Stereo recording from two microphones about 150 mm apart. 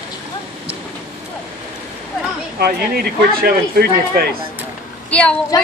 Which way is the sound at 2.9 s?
90° right.